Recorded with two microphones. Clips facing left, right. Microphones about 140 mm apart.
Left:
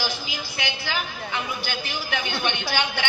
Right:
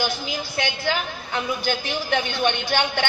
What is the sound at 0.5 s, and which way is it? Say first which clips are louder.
A woman's voice: right 5 dB; 45° right (ahead or behind).